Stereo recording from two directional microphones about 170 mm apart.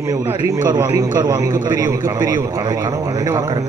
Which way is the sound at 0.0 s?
15° right (ahead or behind).